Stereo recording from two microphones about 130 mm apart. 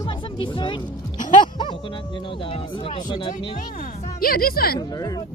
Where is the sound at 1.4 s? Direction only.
35° left (ahead or behind).